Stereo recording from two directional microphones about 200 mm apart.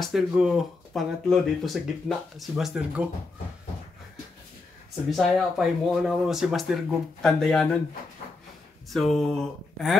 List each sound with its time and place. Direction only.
0.0 s speech: 5° right (ahead or behind)
5.1 s speech: centre (ahead or behind)
8.8 s speech: centre (ahead or behind)